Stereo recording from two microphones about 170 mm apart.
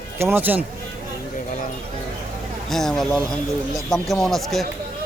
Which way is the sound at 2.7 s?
Centre (ahead or behind).